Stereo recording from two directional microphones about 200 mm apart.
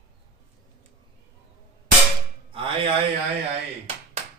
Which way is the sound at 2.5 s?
25° right (ahead or behind).